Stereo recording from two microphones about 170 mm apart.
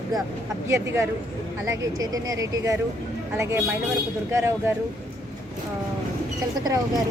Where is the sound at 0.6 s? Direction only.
15° right (ahead or behind).